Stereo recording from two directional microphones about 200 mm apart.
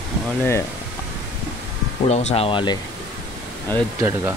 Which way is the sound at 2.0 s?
35° left (ahead or behind).